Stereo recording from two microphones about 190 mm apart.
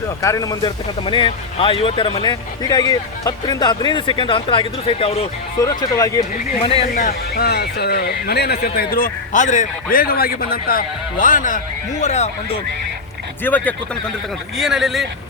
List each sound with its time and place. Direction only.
0.2 s speech: 15° left (ahead or behind)
5.5 s speech: 15° left (ahead or behind)
6.6 s speech: 30° left (ahead or behind)
6.9 s speech: 50° left (ahead or behind)
13.4 s speech: 10° left (ahead or behind)
14.6 s speech: centre (ahead or behind)